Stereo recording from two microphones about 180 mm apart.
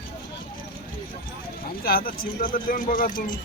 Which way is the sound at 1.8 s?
55° left (ahead or behind).